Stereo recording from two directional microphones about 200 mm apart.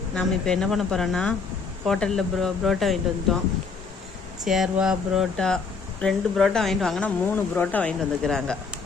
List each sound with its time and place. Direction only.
0.1 s speech: 5° left (ahead or behind)
4.4 s speech: centre (ahead or behind)